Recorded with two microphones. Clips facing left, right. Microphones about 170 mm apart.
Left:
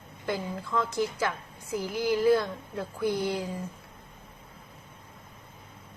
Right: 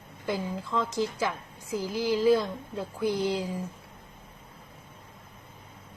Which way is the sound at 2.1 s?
15° right (ahead or behind).